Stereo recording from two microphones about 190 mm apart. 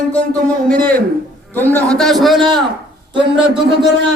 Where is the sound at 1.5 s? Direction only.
10° left (ahead or behind).